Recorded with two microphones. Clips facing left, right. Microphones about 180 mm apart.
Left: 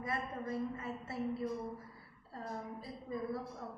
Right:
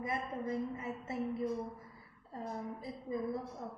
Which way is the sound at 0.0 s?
20° right (ahead or behind).